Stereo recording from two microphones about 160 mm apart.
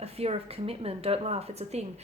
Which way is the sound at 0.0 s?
40° right (ahead or behind).